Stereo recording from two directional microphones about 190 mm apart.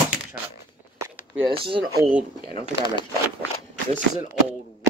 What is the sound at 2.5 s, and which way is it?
Speech, 25° left (ahead or behind).